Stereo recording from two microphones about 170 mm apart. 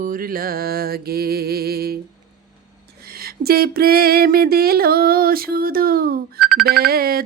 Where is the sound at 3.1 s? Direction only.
60° right (ahead or behind).